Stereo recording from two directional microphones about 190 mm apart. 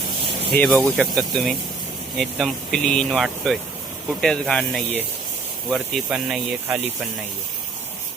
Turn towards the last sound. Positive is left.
turn(degrees=0)  # may be behind; listen again after turning